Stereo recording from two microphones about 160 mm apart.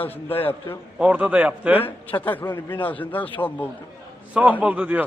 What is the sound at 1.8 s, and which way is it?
A man's voice, 10° left (ahead or behind).